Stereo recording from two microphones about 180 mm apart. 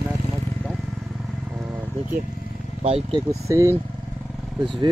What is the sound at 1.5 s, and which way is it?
Vehicle, 10° right (ahead or behind).